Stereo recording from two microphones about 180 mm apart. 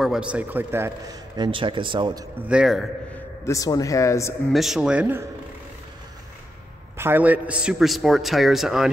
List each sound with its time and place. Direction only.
0.0 s a man's voice: 5° right (ahead or behind); by 2.2 s 25° right (ahead or behind)
2.4 s a man's voice: 5° right (ahead or behind)
3.4 s speech: 20° left (ahead or behind)
4.5 s a man's voice: centre (ahead or behind)
7.0 s a man's voice: 10° right (ahead or behind)